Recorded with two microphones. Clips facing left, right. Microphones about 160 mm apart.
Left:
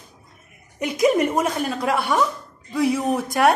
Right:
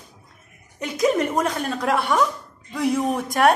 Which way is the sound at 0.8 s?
15° left (ahead or behind).